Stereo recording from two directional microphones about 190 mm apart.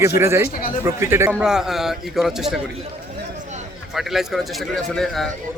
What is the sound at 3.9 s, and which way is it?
A man's voice, centre (ahead or behind).